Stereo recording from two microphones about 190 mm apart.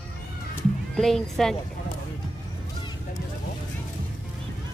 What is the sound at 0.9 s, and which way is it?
Speech, centre (ahead or behind).